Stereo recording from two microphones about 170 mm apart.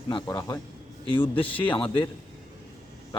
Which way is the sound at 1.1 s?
30° left (ahead or behind).